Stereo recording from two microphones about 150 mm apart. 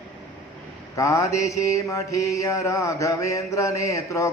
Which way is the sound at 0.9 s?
20° left (ahead or behind).